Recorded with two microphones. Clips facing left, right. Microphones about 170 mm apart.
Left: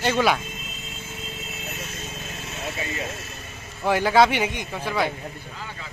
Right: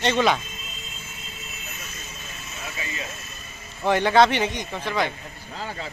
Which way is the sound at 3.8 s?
5° left (ahead or behind).